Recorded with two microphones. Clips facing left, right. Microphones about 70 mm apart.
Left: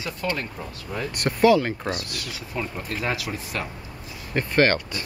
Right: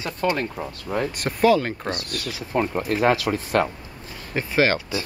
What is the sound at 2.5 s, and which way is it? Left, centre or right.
Speech, right.